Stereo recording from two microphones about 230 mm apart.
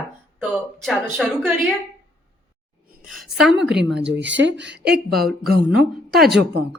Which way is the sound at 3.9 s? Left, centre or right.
Right.